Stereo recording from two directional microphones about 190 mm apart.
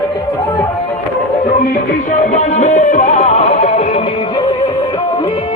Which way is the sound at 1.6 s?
40° left (ahead or behind).